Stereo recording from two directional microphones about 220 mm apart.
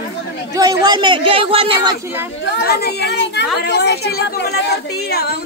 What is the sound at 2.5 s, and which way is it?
Speech, 45° left (ahead or behind).